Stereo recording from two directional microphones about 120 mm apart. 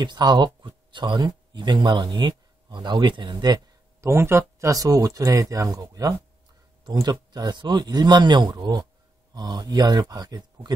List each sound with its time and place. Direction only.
0.0 s speech: 35° right (ahead or behind)
4.0 s speech: 20° right (ahead or behind)